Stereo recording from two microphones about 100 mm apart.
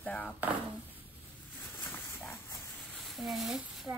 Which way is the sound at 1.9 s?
25° left (ahead or behind).